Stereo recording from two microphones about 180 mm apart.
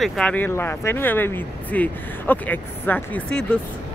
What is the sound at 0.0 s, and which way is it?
Speech, 5° left (ahead or behind).